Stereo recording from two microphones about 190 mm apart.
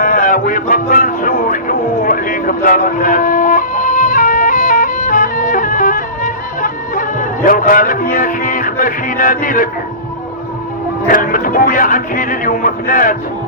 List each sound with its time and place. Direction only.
0.0 s music: 45° left (ahead or behind)
11.1 s speech: 45° left (ahead or behind)